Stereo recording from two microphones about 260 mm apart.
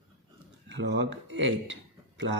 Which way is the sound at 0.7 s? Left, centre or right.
Right.